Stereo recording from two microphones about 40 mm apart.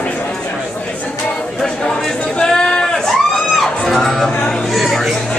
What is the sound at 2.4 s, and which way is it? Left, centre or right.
Sheep, centre.